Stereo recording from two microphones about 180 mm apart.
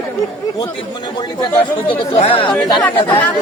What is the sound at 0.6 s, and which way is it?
Speech, 20° left (ahead or behind).